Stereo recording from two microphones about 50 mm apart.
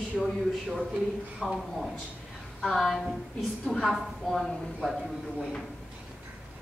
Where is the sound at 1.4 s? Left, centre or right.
Centre.